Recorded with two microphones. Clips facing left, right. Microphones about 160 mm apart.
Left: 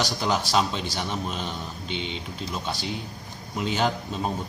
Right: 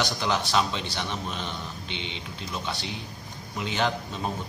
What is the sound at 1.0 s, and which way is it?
Speech, 10° left (ahead or behind).